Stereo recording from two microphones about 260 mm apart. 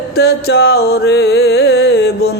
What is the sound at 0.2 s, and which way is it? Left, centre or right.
Music, left.